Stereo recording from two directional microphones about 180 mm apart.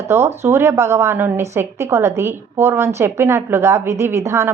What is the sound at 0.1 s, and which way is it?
A woman's voice, 15° right (ahead or behind).